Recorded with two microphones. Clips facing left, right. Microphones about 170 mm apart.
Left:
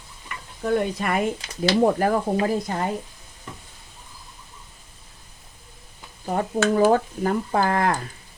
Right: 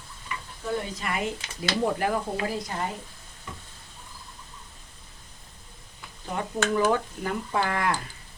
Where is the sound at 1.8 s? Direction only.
45° left (ahead or behind).